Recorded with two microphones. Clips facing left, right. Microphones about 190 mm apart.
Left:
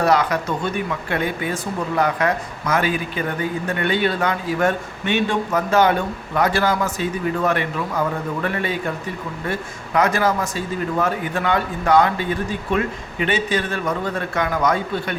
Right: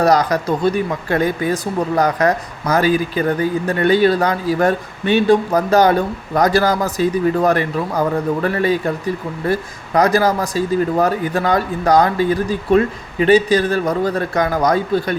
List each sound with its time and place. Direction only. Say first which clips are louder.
0.0 s speech: right 4 dB; 40° right (ahead or behind)